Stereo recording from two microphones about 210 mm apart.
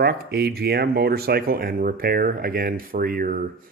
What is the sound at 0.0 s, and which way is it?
Speech, 50° right (ahead or behind).